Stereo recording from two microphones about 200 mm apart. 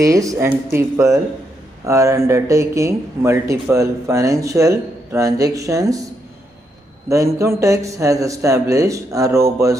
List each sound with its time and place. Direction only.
0.0 s speech: 15° right (ahead or behind)
7.1 s speech: 15° right (ahead or behind)